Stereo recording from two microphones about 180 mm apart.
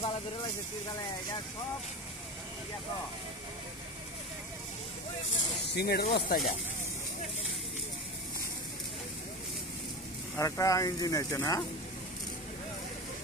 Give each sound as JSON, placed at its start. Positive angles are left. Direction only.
{"t": 5.8, "sound": "speech", "side_deg": 60}
{"t": 10.3, "sound": "speech", "side_deg": 20}